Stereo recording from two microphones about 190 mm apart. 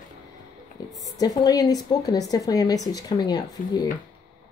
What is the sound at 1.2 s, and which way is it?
Speech, 20° left (ahead or behind).